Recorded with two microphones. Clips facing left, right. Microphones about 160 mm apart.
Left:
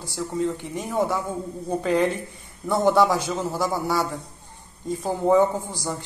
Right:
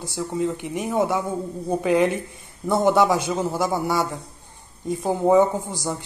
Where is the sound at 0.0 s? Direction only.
20° right (ahead or behind).